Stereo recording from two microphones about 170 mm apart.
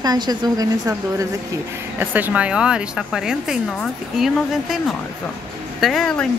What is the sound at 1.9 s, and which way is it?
Speech, 10° right (ahead or behind).